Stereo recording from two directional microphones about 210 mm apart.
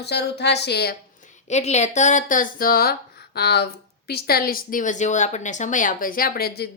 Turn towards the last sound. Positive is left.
turn(degrees=50)  # may be behind; listen again after turning